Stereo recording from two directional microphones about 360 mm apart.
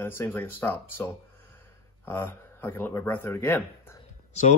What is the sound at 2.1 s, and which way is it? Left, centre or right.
Speech, centre.